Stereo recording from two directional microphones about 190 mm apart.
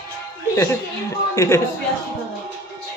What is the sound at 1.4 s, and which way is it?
Speech, 15° left (ahead or behind).